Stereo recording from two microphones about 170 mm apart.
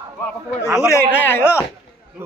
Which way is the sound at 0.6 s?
15° right (ahead or behind).